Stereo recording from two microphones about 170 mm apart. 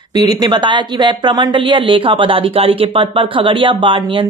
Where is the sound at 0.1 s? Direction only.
25° right (ahead or behind).